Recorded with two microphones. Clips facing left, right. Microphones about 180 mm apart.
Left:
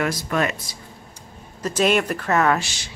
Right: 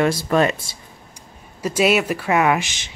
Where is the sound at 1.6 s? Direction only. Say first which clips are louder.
Right 2 dB; 10° right (ahead or behind).